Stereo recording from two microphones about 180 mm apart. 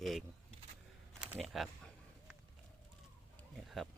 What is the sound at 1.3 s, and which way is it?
Speech, centre (ahead or behind).